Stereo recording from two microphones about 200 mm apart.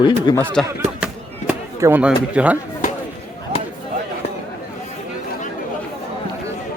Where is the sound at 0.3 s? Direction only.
20° left (ahead or behind).